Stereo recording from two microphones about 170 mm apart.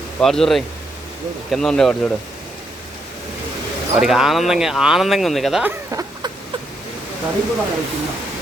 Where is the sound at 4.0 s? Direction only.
5° right (ahead or behind).